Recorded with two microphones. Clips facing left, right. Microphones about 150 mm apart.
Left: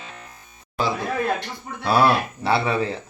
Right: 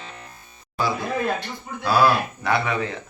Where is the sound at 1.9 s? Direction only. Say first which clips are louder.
Even; 25° left (ahead or behind).